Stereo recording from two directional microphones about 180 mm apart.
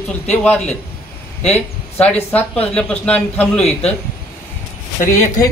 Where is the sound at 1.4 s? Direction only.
35° left (ahead or behind).